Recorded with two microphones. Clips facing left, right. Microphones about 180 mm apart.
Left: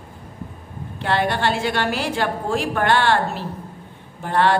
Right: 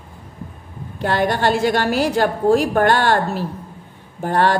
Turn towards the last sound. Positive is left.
turn(degrees=-45)  # may be behind; listen again after turning